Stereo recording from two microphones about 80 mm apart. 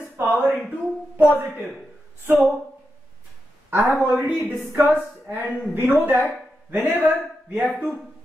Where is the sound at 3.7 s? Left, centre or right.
Right.